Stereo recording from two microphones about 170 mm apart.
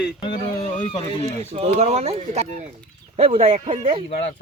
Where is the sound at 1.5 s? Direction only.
35° right (ahead or behind).